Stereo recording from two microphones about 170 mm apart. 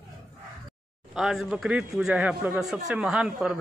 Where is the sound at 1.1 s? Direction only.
Centre (ahead or behind).